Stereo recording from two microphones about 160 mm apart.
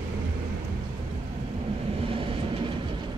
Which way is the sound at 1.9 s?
35° right (ahead or behind).